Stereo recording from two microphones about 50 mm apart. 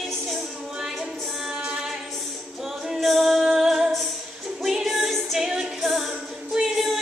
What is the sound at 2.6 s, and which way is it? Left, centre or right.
Music, centre.